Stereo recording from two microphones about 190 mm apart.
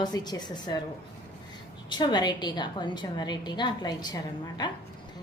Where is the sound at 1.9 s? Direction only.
25° left (ahead or behind).